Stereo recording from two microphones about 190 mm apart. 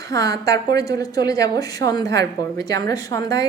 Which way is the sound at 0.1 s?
20° left (ahead or behind).